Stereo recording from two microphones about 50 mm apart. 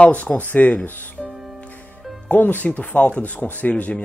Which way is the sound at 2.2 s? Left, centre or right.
Left.